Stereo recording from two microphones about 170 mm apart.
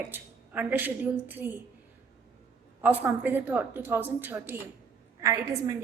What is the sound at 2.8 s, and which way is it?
A woman's voice, 10° right (ahead or behind).